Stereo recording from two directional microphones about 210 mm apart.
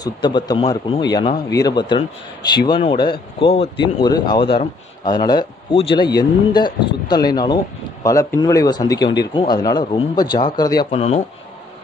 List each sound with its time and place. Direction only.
0.0 s speech: 20° left (ahead or behind)
10.9 s speech: 30° left (ahead or behind)